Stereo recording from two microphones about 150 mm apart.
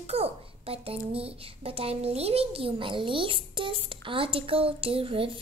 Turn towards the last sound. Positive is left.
turn(degrees=-35)  # may be behind; listen again after turning